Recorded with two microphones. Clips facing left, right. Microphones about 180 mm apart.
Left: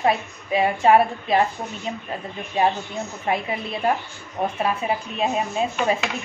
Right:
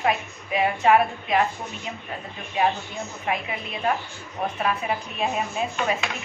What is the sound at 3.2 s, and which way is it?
Speech, 35° left (ahead or behind).